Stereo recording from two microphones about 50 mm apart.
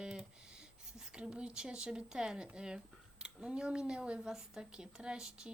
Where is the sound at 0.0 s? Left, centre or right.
Centre.